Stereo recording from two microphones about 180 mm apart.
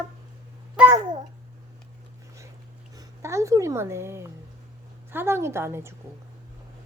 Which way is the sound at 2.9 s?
20° right (ahead or behind).